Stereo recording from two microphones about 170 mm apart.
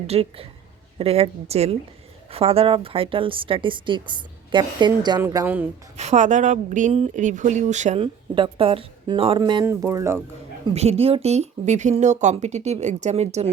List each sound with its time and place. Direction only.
0.1 s a woman's voice: 35° right (ahead or behind); by 5.6 s 15° right (ahead or behind)
6.0 s speech: 45° right (ahead or behind)
8.0 s a woman's voice: 30° right (ahead or behind)
9.6 s speech: 15° right (ahead or behind)
10.8 s speech: 35° right (ahead or behind)